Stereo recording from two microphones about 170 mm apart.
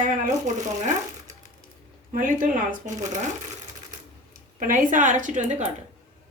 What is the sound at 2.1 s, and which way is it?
A woman's voice, 50° right (ahead or behind).